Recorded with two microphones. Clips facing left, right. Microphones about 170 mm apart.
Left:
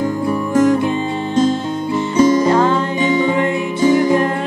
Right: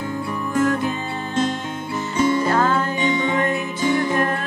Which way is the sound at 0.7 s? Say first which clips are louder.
Left 7 dB; 20° left (ahead or behind).